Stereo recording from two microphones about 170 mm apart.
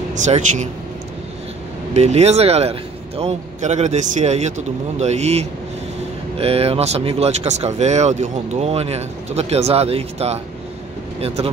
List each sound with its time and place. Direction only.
0.1 s speech: 45° right (ahead or behind)
2.0 s speech: 40° right (ahead or behind)